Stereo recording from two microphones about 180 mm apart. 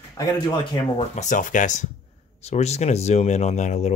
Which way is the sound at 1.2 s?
45° left (ahead or behind).